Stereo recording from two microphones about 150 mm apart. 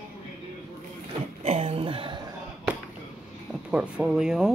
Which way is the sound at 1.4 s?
45° right (ahead or behind).